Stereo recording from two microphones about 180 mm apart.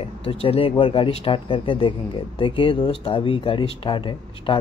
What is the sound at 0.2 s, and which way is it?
Speech, 30° left (ahead or behind).